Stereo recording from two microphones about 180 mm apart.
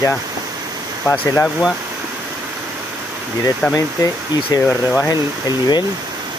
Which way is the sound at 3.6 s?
5° left (ahead or behind).